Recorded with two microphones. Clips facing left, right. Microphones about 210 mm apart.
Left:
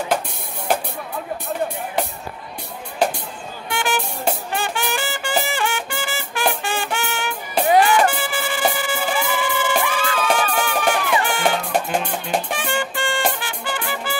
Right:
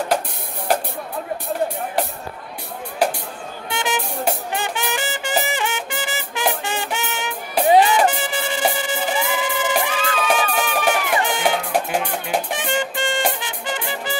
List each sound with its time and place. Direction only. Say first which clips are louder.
3.7 s music: left 1 dB; 20° right (ahead or behind)
11.7 s music: even; 5° right (ahead or behind)
12.5 s music: right 1 dB; 20° right (ahead or behind)